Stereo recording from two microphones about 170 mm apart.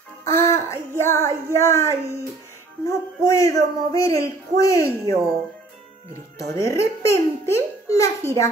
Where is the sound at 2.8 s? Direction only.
20° left (ahead or behind).